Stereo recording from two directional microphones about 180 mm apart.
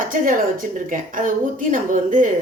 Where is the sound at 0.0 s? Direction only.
50° right (ahead or behind).